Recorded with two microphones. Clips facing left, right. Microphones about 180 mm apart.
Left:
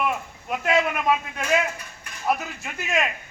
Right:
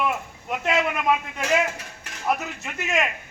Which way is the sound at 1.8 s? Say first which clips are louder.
Right 2 dB; 75° right (ahead or behind).